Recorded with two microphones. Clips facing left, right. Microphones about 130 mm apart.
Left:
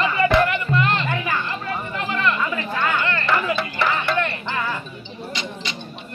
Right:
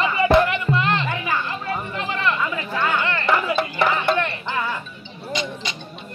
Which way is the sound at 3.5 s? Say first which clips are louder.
Right 2 dB; 50° right (ahead or behind).